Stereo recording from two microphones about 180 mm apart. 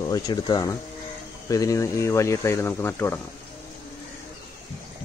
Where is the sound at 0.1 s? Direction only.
25° left (ahead or behind).